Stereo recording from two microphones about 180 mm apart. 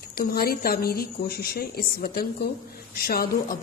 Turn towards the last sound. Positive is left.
turn(degrees=55)  # may be behind; listen again after turning